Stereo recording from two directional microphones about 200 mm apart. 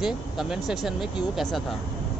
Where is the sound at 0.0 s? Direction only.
Centre (ahead or behind).